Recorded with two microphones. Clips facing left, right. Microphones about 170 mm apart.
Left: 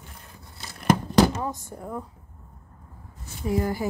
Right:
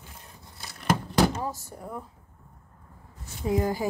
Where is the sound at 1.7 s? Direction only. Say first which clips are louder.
Left 3 dB; 20° left (ahead or behind).